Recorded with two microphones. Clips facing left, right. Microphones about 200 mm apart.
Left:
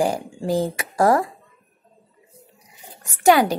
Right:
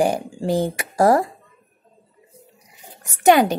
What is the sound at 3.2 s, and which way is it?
Speech, 20° right (ahead or behind).